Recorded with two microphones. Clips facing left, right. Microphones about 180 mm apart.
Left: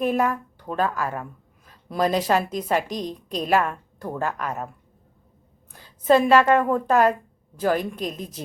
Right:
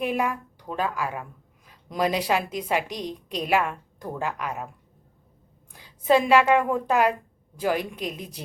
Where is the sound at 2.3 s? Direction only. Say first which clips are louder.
Left 3 dB; 10° right (ahead or behind).